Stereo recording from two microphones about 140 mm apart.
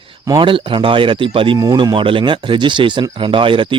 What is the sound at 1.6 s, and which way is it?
Speech, 30° right (ahead or behind).